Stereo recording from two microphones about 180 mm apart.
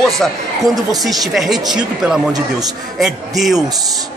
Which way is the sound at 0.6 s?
20° right (ahead or behind).